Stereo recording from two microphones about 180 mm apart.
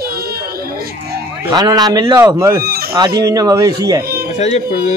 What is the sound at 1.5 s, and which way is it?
Speech, 20° right (ahead or behind).